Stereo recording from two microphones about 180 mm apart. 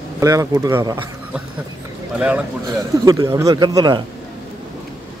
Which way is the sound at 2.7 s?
20° right (ahead or behind).